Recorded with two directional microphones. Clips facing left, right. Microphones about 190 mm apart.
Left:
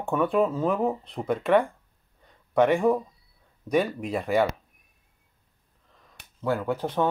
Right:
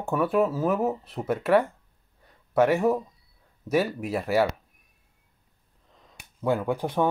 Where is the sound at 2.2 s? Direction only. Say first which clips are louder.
Even; 5° right (ahead or behind).